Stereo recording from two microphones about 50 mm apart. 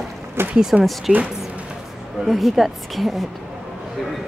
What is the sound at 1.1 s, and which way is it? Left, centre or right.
Speech, centre.